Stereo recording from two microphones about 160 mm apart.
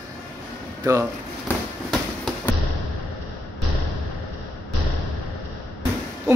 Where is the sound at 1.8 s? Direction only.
5° left (ahead or behind).